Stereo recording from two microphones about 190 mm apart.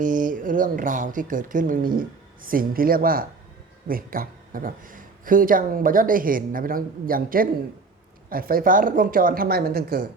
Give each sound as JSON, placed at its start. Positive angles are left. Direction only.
{"t": 0.0, "sound": "speech", "side_deg": -45}